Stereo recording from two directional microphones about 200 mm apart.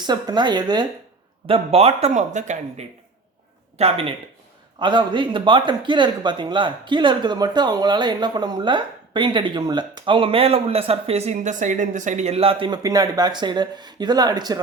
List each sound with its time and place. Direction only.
0.0 s speech: 20° right (ahead or behind)